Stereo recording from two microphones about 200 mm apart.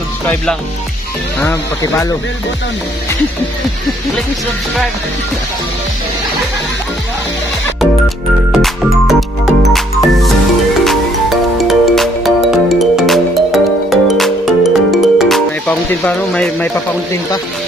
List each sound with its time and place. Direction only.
1.4 s speech: 15° left (ahead or behind)
8.5 s music: centre (ahead or behind)